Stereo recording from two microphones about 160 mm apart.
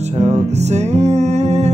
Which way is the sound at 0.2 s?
45° right (ahead or behind).